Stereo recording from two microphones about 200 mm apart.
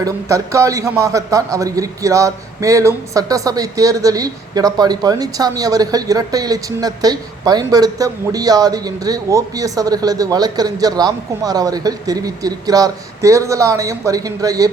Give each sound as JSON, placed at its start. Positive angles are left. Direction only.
{"t": 0.0, "sound": "a man's voice", "side_deg": -15}